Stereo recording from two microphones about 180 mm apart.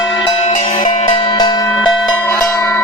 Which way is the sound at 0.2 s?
25° left (ahead or behind).